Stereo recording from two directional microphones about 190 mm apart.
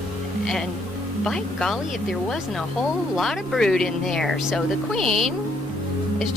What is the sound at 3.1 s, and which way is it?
Speech, centre (ahead or behind).